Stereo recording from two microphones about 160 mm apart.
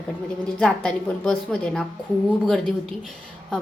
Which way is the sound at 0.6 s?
5° left (ahead or behind).